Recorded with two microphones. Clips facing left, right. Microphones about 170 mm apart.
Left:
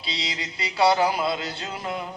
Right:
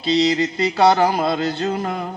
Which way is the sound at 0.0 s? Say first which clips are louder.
Right 16 dB; 45° right (ahead or behind).